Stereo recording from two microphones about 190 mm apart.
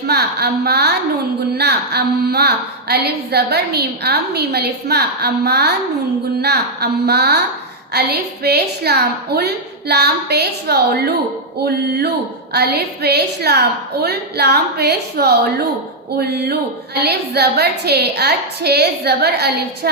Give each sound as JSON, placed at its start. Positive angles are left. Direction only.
{"t": 0.1, "sound": "a woman's voice", "side_deg": -55}